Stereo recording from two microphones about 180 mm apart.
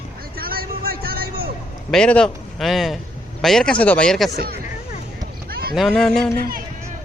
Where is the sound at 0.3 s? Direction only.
55° right (ahead or behind).